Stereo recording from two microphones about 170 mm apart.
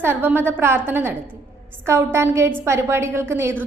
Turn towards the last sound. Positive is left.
turn(degrees=-15)  # may be behind; listen again after turning